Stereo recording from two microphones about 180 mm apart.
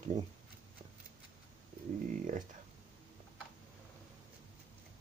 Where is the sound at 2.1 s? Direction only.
45° right (ahead or behind).